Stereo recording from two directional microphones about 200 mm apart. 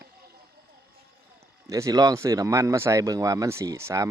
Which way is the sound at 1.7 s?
15° right (ahead or behind).